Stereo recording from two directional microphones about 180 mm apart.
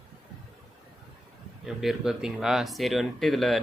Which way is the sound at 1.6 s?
Centre (ahead or behind).